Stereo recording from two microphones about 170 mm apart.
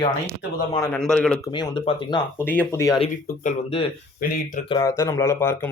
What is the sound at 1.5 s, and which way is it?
Speech, 30° left (ahead or behind).